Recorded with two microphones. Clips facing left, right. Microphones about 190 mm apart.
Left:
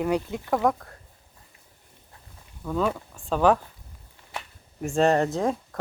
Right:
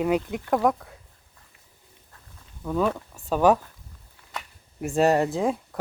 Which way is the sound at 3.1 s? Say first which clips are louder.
Right 1 dB; 10° right (ahead or behind).